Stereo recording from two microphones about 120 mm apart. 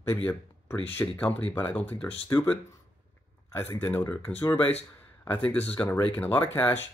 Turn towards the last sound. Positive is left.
turn(degrees=15)  # may be behind; listen again after turning